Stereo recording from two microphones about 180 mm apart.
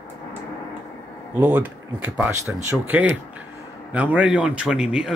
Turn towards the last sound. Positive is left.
turn(degrees=-5)  # may be behind; listen again after turning